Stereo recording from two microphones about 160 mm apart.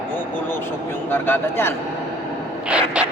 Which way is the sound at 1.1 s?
15° left (ahead or behind).